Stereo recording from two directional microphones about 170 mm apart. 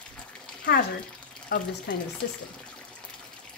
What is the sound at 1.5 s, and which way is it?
Speech, 65° left (ahead or behind).